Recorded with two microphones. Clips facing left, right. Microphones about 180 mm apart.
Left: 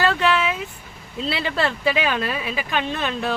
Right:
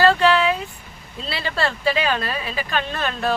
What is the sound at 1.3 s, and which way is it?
Speech, 15° left (ahead or behind).